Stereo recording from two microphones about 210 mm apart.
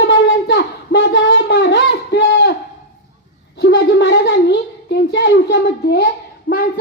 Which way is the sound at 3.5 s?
55° left (ahead or behind).